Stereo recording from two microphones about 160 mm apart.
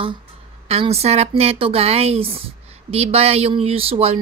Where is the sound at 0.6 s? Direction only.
40° right (ahead or behind).